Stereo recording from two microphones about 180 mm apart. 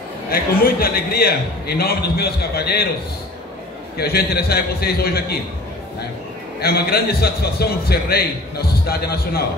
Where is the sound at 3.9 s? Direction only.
60° left (ahead or behind).